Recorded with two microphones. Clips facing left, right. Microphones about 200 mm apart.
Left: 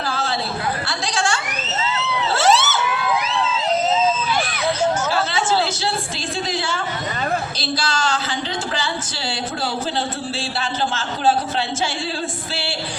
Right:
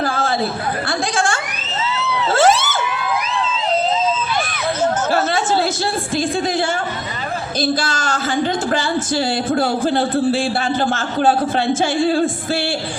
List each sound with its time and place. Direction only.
0.0 s a sound: 50° right (ahead or behind)
0.9 s speech: 55° right (ahead or behind)
2.3 s vehicle: 50° right (ahead or behind)
7.6 s speech: 50° right (ahead or behind)
10.9 s speech: 55° right (ahead or behind)